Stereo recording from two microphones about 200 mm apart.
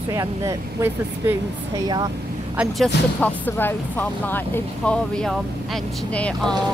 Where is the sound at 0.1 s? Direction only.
15° right (ahead or behind).